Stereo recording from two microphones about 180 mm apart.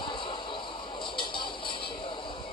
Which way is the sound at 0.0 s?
25° left (ahead or behind).